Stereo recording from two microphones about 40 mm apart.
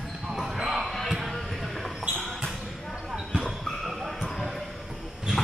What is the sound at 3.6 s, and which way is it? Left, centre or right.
Basketball bounce, centre.